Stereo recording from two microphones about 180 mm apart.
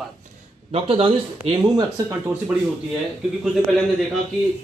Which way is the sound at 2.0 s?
10° right (ahead or behind).